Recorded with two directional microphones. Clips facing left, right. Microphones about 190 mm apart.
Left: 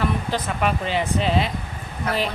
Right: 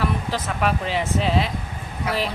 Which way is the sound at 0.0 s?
Centre (ahead or behind).